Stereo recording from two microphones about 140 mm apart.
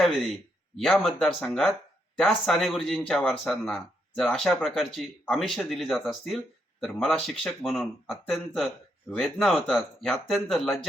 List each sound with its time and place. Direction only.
0.0 s speech: centre (ahead or behind)